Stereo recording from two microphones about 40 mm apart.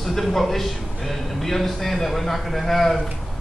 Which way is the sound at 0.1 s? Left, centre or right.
Centre.